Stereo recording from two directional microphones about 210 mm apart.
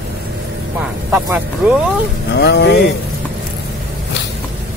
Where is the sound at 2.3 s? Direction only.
55° left (ahead or behind).